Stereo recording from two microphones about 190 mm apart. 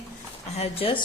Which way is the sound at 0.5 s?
30° left (ahead or behind).